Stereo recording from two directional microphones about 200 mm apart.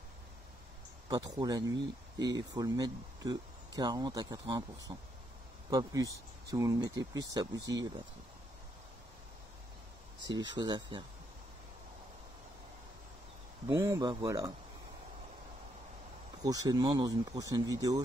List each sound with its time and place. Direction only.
1.0 s speech: 20° right (ahead or behind)
10.6 s speech: 20° right (ahead or behind)
13.7 s speech: 15° right (ahead or behind)
16.4 s speech: 15° right (ahead or behind)